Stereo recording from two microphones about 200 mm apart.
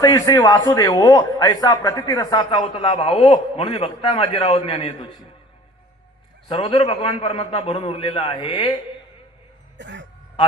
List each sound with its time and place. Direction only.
0.0 s a man's voice: 20° left (ahead or behind)
6.5 s a man's voice: 25° left (ahead or behind)
9.7 s throat clearing: 65° right (ahead or behind)